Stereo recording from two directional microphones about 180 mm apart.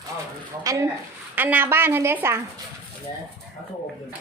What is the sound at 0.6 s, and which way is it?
Speech, 20° right (ahead or behind).